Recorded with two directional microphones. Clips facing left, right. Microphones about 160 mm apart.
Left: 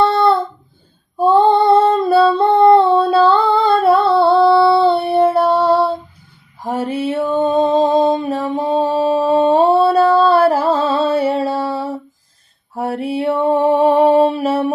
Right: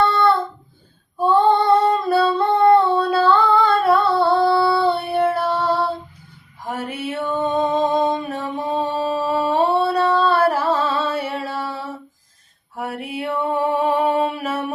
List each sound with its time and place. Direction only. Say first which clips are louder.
1.2 s female singing: left 4 dB; 25° left (ahead or behind)
6.7 s a sound: left 7 dB; 30° left (ahead or behind)
12.7 s mantra: left 8 dB; 30° left (ahead or behind)